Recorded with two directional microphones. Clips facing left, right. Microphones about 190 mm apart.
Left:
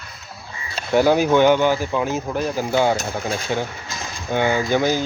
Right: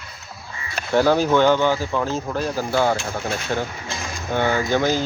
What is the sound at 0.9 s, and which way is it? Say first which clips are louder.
Speech: left 1 dB; 15° left (ahead or behind).